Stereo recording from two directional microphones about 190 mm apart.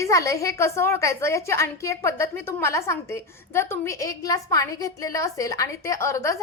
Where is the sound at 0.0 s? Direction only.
15° left (ahead or behind).